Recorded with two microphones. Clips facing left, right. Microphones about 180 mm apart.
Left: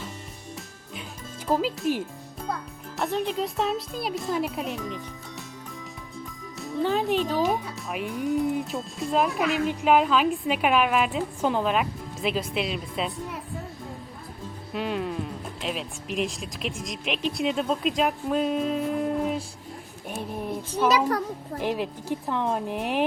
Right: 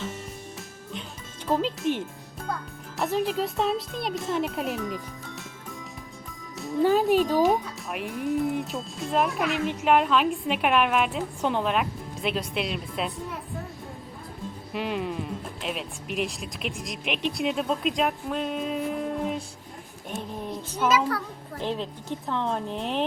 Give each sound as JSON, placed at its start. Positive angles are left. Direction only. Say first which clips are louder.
{"t": 1.5, "sound": "speech", "louder": "left 1 dB", "side_deg": 5}
{"t": 6.6, "sound": "speech", "louder": "right 4 dB", "side_deg": 0}
{"t": 7.8, "sound": "speech", "louder": "left 2 dB", "side_deg": 0}
{"t": 14.7, "sound": "a woman's voice", "louder": "left 1 dB", "side_deg": 0}
{"t": 20.8, "sound": "a child's voice", "louder": "left 1 dB", "side_deg": 40}
{"t": 21.6, "sound": "a woman's voice", "louder": "left 2 dB", "side_deg": 10}